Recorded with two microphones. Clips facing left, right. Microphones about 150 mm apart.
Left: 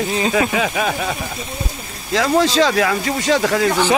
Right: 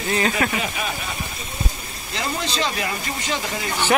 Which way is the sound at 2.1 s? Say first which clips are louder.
Left 11 dB; 90° left.